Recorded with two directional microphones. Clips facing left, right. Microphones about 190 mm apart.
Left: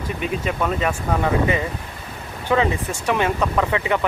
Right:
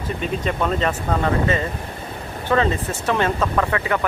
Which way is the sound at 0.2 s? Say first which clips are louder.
Even; 10° left (ahead or behind).